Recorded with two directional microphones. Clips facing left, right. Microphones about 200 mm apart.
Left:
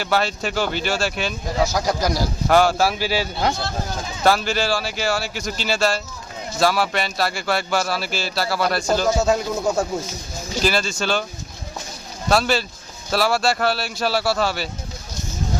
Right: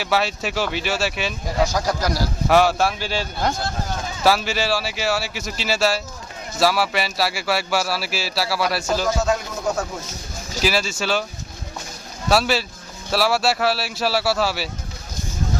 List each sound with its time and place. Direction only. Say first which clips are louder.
0.0 s speech: even; centre (ahead or behind)
1.7 s speech: left 1 dB; 10° left (ahead or behind)
2.5 s speech: even; centre (ahead or behind)
4.2 s speech: left 1 dB; 5° right (ahead or behind)
9.2 s speech: left 3 dB; 25° left (ahead or behind)
10.6 s speech: even; 5° right (ahead or behind)
12.3 s speech: even; 5° right (ahead or behind)